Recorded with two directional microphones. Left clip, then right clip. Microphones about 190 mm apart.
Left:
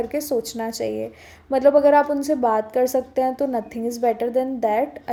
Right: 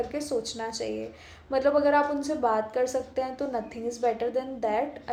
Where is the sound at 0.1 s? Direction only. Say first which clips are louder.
Left 7 dB; 40° left (ahead or behind).